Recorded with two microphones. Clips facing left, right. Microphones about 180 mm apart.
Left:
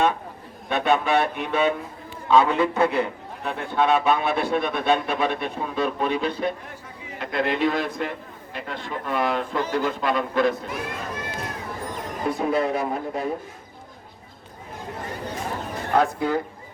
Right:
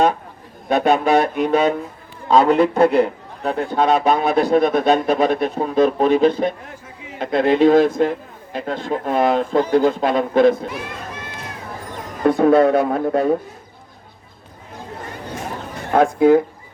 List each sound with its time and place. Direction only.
0.7 s a man's voice: 40° right (ahead or behind)
12.2 s speech: 60° right (ahead or behind)
15.9 s speech: 50° right (ahead or behind)